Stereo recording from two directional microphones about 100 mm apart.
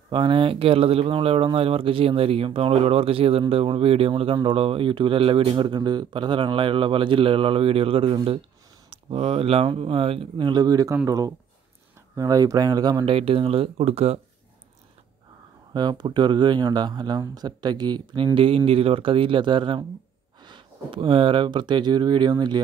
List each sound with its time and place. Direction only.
0.1 s speech: 60° right (ahead or behind)
5.5 s speech: 50° right (ahead or behind)
8.9 s speech: 85° right; by 10.6 s 55° right (ahead or behind)
10.6 s speech: 35° right (ahead or behind)
13.0 s speech: 70° right (ahead or behind); by 14.2 s 90° right
15.7 s speech: 45° right (ahead or behind); by 18.6 s 65° right (ahead or behind)
18.7 s speech: 75° right (ahead or behind); by 22.6 s 45° right (ahead or behind)